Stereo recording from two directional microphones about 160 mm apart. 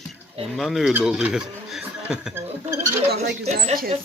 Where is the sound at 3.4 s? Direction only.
45° right (ahead or behind).